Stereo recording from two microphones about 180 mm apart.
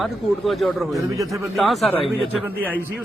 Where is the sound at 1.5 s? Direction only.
Centre (ahead or behind).